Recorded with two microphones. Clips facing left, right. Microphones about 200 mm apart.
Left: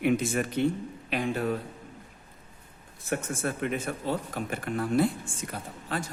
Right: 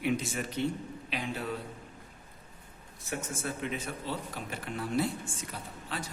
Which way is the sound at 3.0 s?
55° left (ahead or behind).